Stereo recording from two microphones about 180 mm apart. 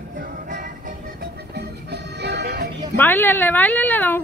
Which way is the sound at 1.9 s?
65° right (ahead or behind).